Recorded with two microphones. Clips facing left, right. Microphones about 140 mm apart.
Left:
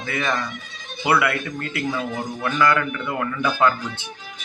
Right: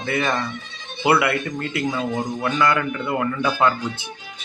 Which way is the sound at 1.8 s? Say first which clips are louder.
Right 2 dB; 20° right (ahead or behind).